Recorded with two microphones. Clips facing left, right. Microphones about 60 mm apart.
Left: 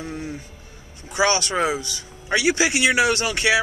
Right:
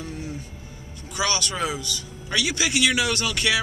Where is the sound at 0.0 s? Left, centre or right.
Left.